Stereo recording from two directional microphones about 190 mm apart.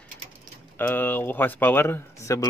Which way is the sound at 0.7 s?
10° left (ahead or behind).